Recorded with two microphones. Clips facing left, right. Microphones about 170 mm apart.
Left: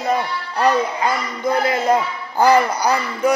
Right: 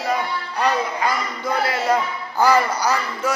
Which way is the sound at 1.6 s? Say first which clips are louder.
Left 1 dB; 20° left (ahead or behind).